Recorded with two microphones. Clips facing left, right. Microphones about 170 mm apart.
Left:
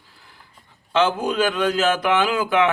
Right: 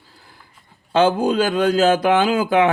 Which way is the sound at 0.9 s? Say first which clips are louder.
Right 4 dB; 30° right (ahead or behind).